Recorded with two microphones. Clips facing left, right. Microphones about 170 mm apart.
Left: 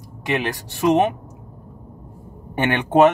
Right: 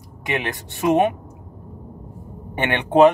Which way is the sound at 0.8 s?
5° right (ahead or behind).